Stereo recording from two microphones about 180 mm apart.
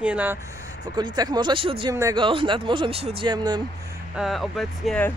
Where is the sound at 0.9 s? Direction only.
20° right (ahead or behind).